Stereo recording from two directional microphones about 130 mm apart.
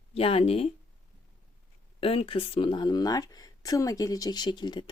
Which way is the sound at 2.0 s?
50° left (ahead or behind).